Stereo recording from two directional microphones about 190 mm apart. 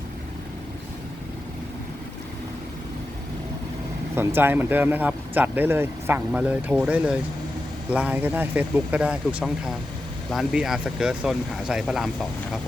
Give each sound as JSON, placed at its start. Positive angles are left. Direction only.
{"t": 4.1, "sound": "speech", "side_deg": -10}